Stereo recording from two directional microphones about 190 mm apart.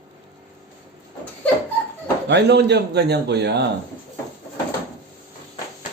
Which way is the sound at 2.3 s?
65° right (ahead or behind).